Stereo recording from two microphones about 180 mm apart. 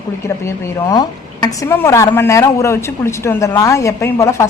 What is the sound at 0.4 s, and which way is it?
Speech, 20° left (ahead or behind).